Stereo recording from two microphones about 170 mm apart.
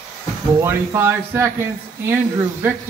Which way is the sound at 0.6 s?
15° right (ahead or behind).